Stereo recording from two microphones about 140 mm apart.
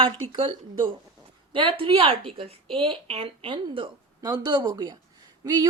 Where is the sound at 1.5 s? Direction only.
40° right (ahead or behind).